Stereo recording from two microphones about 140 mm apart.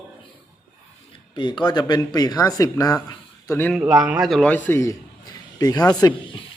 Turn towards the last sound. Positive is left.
turn(degrees=30)  # may be behind; listen again after turning